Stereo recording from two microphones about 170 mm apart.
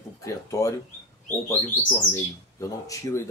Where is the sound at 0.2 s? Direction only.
20° left (ahead or behind).